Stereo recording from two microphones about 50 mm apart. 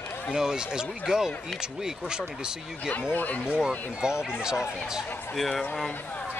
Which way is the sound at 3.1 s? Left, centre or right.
Left.